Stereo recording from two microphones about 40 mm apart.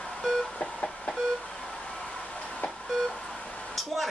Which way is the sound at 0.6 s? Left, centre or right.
Left.